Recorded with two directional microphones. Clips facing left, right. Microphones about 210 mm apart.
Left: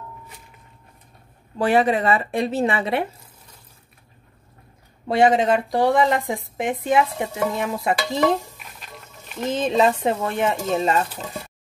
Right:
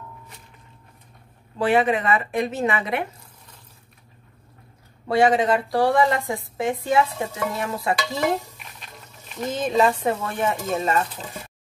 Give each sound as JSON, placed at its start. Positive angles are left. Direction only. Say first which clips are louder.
{"t": 1.6, "sound": "speech", "louder": "left 1 dB", "side_deg": 40}
{"t": 5.0, "sound": "speech", "louder": "left 1 dB", "side_deg": 20}
{"t": 8.6, "sound": "music", "louder": "left 2 dB", "side_deg": 0}
{"t": 9.5, "sound": "speech", "louder": "left 1 dB", "side_deg": 20}